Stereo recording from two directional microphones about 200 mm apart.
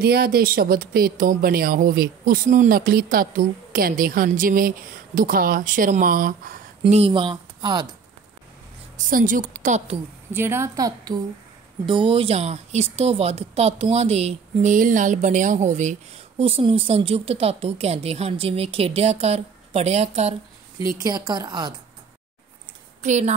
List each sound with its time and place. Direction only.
0.0 s speech: 50° right (ahead or behind)
6.8 s speech: 30° right (ahead or behind)
8.9 s a woman's voice: 40° right (ahead or behind)
10.3 s a woman's voice: 10° right (ahead or behind)
11.9 s a woman's voice: 25° right (ahead or behind)
20.9 s a woman's voice: 20° right (ahead or behind)
23.0 s a woman's voice: 35° right (ahead or behind)